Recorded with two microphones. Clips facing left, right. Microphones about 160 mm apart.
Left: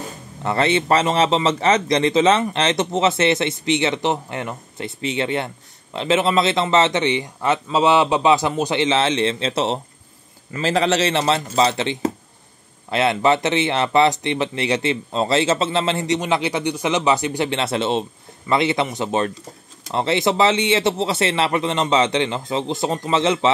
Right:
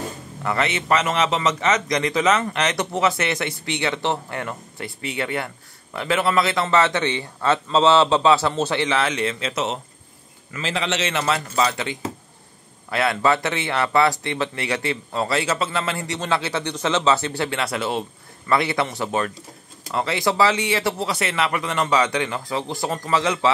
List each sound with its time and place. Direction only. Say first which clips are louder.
0.4 s a man's voice: left 5 dB; 30° left (ahead or behind)